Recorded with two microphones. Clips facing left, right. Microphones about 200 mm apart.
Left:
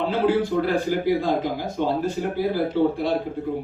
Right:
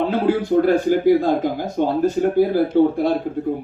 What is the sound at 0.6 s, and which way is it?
A man's voice, 50° right (ahead or behind).